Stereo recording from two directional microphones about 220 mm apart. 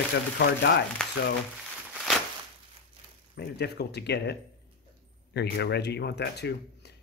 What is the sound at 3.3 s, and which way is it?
Speech, 50° left (ahead or behind).